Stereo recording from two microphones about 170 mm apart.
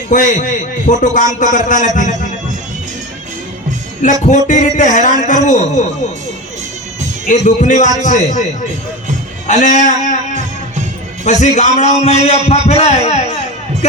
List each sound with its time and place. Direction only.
0.1 s a man's voice: 50° left (ahead or behind)
4.0 s a man's voice: 50° left (ahead or behind)
7.3 s a man's voice: 50° left (ahead or behind)
9.5 s a man's voice: 45° left (ahead or behind)